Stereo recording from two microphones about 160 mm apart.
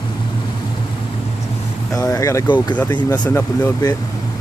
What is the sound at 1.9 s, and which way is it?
Speech, 20° left (ahead or behind).